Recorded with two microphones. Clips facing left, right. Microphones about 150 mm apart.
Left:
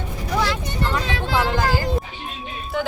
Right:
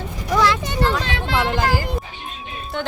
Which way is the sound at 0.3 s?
90° right.